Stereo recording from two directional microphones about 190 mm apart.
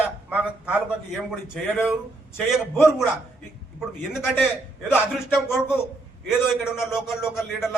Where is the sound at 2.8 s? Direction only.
Centre (ahead or behind).